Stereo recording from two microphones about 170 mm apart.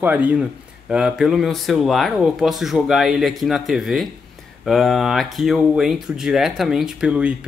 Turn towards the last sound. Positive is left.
turn(degrees=-5)  # may be behind; listen again after turning